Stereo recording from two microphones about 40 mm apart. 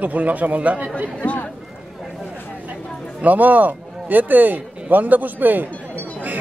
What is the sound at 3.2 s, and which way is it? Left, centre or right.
A man's voice, right.